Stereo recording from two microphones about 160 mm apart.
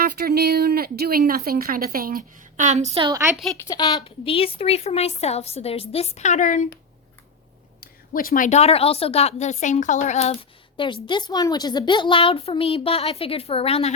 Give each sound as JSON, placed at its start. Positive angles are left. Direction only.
{"t": 0.0, "sound": "speech", "side_deg": -75}
{"t": 3.1, "sound": "a woman's voice", "side_deg": -15}
{"t": 3.7, "sound": "a woman's voice", "side_deg": 25}
{"t": 7.8, "sound": "a woman's voice", "side_deg": 65}
{"t": 10.8, "sound": "a woman's voice", "side_deg": 30}